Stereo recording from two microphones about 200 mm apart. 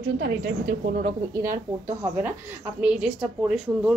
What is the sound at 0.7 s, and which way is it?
Speech, 40° right (ahead or behind).